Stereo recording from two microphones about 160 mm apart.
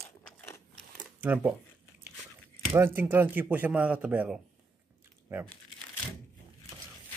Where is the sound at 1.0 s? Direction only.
10° right (ahead or behind).